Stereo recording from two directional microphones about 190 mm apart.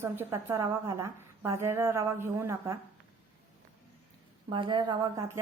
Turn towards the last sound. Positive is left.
turn(degrees=-20)  # may be behind; listen again after turning